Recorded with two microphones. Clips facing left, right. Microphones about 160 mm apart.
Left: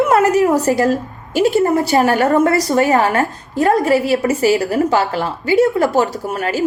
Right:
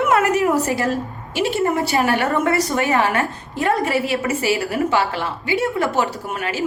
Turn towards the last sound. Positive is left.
turn(degrees=40)  # may be behind; listen again after turning